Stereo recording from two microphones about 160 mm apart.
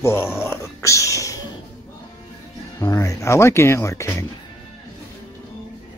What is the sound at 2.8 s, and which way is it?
Speech, 20° left (ahead or behind).